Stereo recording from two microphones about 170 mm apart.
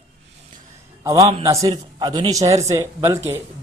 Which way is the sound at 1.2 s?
35° right (ahead or behind).